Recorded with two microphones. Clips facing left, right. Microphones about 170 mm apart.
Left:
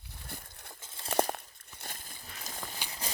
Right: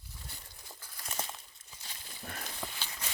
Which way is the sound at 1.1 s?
60° left (ahead or behind).